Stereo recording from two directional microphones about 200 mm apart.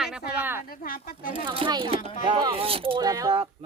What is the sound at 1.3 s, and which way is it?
Speech, 25° right (ahead or behind).